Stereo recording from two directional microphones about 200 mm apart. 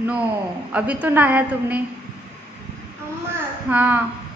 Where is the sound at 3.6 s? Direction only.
10° right (ahead or behind).